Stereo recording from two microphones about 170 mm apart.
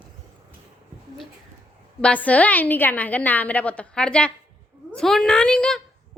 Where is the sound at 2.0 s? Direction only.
10° left (ahead or behind).